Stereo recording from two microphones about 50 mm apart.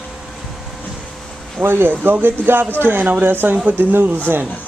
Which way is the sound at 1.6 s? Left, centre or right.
Right.